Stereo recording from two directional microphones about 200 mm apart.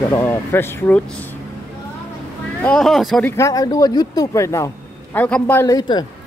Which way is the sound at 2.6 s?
5° left (ahead or behind).